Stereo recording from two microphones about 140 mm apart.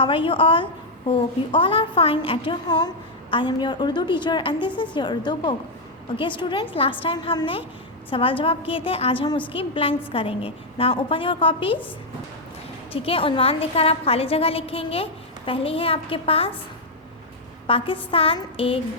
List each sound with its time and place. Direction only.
0.0 s a woman's voice: 40° left (ahead or behind)
12.9 s a woman's voice: 40° left (ahead or behind)
17.7 s a woman's voice: 40° left (ahead or behind)